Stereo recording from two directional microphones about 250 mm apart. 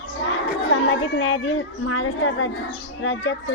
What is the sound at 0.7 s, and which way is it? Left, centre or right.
A child's voice, left.